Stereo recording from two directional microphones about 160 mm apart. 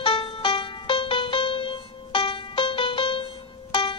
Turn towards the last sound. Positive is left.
turn(degrees=30)  # may be behind; listen again after turning